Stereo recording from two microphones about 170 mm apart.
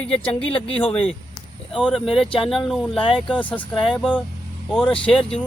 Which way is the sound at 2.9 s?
30° left (ahead or behind).